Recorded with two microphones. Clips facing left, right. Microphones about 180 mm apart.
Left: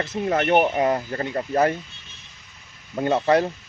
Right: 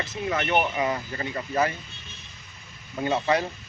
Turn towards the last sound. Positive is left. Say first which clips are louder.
# left 5 dB
turn(degrees=50)  # may be behind; listen again after turning